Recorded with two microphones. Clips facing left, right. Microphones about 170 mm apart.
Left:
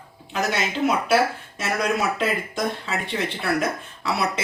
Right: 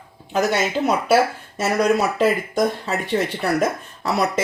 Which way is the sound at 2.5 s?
40° right (ahead or behind).